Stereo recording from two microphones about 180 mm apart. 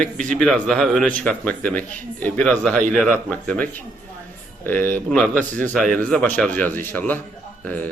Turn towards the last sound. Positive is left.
turn(degrees=10)  # may be behind; listen again after turning